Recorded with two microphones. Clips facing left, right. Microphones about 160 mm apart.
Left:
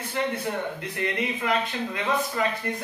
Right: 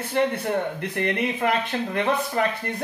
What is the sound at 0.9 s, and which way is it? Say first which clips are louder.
Speech: right 3 dB; 60° right (ahead or behind).